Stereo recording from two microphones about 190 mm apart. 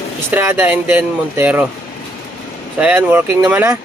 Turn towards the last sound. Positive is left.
turn(degrees=-10)  # may be behind; listen again after turning